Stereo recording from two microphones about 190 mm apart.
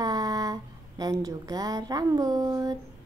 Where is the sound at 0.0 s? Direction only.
20° right (ahead or behind).